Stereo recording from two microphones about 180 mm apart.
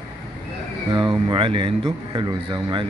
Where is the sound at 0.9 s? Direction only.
25° right (ahead or behind).